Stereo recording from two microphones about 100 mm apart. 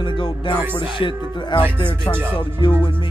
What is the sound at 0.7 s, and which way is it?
Speech, 55° left (ahead or behind).